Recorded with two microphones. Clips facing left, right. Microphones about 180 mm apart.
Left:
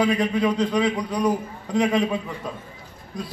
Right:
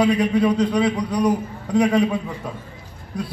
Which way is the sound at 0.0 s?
10° right (ahead or behind).